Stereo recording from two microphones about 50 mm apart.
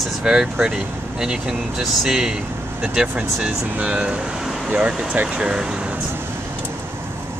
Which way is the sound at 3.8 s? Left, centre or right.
Right.